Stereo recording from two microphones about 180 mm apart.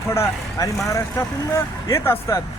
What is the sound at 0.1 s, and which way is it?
Speech, 15° left (ahead or behind).